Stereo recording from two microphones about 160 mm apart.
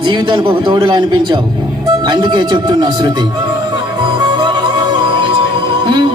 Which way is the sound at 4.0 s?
30° right (ahead or behind).